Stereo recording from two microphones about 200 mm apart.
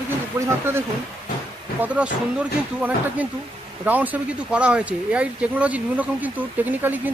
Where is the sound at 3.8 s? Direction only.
10° right (ahead or behind).